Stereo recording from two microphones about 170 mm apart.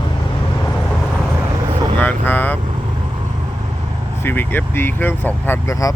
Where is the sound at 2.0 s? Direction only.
10° left (ahead or behind).